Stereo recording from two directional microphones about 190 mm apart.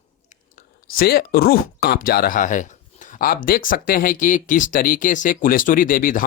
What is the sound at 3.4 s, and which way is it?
Speech, 45° left (ahead or behind).